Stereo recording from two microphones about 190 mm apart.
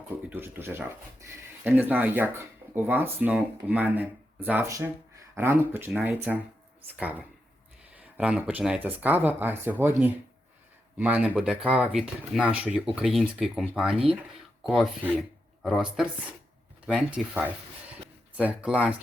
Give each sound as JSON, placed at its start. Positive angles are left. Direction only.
{"t": 0.3, "sound": "speech", "side_deg": -10}